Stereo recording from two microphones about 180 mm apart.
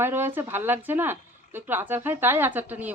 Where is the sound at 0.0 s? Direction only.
10° right (ahead or behind).